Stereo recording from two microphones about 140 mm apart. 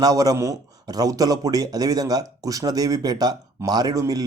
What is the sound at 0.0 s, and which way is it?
Speech, 25° right (ahead or behind).